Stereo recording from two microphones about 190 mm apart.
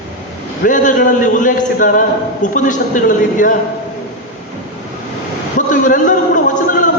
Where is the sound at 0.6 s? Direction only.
40° left (ahead or behind).